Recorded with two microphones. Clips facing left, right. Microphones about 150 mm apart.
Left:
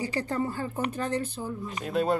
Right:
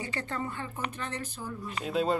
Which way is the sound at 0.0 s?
35° left (ahead or behind).